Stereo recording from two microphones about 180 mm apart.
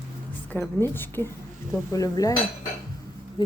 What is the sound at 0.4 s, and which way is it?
Speech, 10° left (ahead or behind).